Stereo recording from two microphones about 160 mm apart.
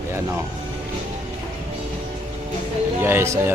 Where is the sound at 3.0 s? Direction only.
15° right (ahead or behind).